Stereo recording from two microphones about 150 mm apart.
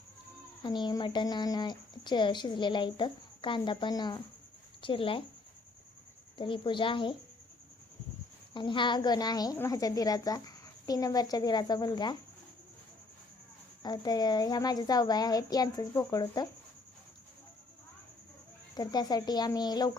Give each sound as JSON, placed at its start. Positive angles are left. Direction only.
{"t": 0.6, "sound": "speech", "side_deg": 30}
{"t": 6.3, "sound": "speech", "side_deg": 35}
{"t": 8.5, "sound": "a child's voice", "side_deg": 30}
{"t": 13.8, "sound": "a child's voice", "side_deg": 25}
{"t": 18.8, "sound": "a child's voice", "side_deg": 25}